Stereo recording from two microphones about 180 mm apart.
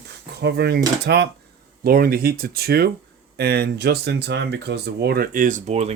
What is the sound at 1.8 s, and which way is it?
Speech, 55° right (ahead or behind).